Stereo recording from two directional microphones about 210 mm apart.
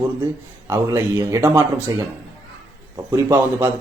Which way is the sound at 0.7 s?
15° right (ahead or behind).